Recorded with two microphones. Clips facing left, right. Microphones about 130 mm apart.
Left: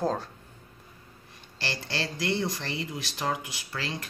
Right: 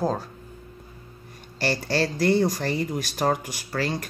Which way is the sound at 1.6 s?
50° right (ahead or behind).